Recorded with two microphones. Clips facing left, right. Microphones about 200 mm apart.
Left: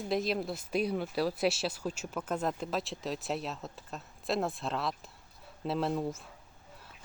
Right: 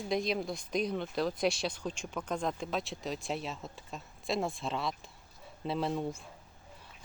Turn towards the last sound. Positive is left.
turn(degrees=0)  # may be behind; listen again after turning